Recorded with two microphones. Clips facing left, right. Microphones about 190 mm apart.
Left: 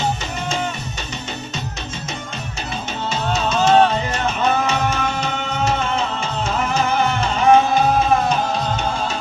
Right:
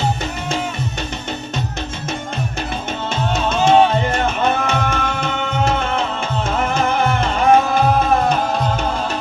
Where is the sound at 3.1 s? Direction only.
55° right (ahead or behind).